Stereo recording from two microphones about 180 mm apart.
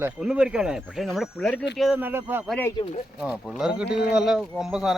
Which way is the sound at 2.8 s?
25° left (ahead or behind).